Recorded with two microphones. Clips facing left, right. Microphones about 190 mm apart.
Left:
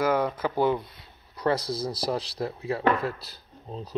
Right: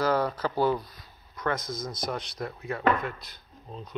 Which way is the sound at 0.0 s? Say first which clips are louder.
Left 1 dB; 15° left (ahead or behind).